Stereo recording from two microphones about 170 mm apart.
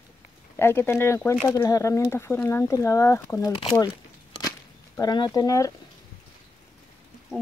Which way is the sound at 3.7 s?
20° left (ahead or behind).